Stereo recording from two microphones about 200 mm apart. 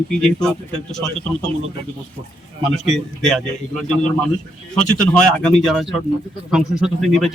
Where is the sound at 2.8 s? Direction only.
Centre (ahead or behind).